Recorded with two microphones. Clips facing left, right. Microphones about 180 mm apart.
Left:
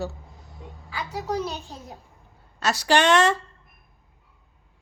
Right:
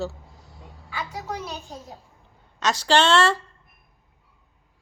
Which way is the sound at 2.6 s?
10° left (ahead or behind).